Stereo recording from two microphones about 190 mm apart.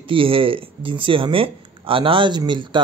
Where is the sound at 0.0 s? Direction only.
30° right (ahead or behind).